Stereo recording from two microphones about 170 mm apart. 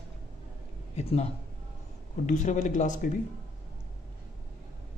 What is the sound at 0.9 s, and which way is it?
Speech, 40° left (ahead or behind).